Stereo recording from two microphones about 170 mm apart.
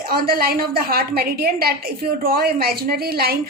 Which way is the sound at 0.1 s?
60° right (ahead or behind).